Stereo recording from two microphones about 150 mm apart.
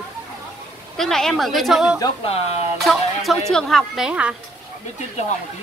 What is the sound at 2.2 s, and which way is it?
Speech, 45° left (ahead or behind).